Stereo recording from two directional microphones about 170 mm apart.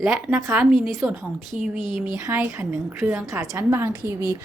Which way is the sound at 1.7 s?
50° right (ahead or behind).